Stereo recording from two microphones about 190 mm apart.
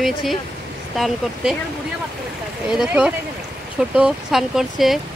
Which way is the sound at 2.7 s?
5° right (ahead or behind).